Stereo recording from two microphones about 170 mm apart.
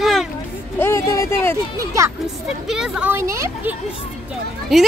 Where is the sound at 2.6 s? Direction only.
5° right (ahead or behind).